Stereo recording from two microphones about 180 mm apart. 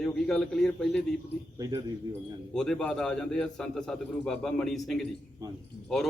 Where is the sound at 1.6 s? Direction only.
20° right (ahead or behind).